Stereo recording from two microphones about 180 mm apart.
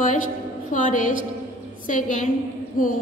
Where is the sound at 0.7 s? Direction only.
45° left (ahead or behind).